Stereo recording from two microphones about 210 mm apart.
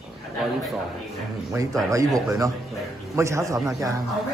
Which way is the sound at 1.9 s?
15° right (ahead or behind).